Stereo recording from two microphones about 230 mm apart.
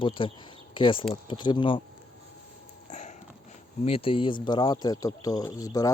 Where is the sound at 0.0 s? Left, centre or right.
Left.